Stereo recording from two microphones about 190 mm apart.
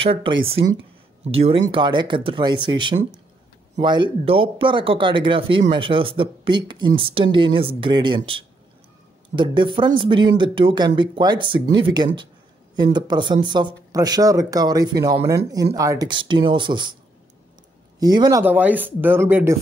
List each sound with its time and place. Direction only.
0.0 s speech: 30° right (ahead or behind)
17.9 s speech: 20° right (ahead or behind)
18.4 s speech: 10° right (ahead or behind)